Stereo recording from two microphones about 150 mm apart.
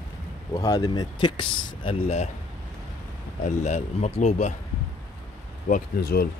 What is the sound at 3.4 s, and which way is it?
Speech, 50° left (ahead or behind).